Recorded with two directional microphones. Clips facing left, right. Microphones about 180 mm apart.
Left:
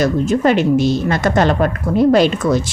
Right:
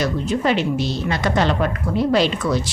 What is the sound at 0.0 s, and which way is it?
A woman's voice, 45° left (ahead or behind).